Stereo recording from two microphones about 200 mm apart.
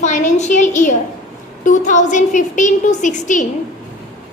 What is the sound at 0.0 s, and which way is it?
A woman's voice, 35° left (ahead or behind).